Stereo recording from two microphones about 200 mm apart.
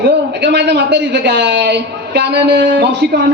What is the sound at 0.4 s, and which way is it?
A woman's voice, 60° right (ahead or behind).